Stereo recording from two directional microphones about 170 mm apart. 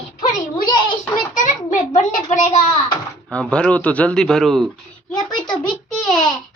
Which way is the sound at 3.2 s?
5° left (ahead or behind).